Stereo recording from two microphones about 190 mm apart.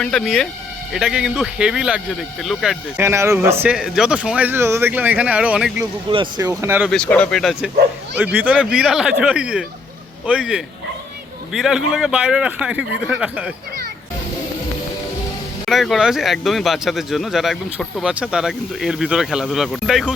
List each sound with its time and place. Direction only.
0.0 s speech: 5° left (ahead or behind)
3.0 s a man's voice: 15° right (ahead or behind)
5.8 s speech: 25° right (ahead or behind)
6.5 s a man's voice: 10° right (ahead or behind)
6.9 s speech: 5° left (ahead or behind)
15.6 s speech: centre (ahead or behind)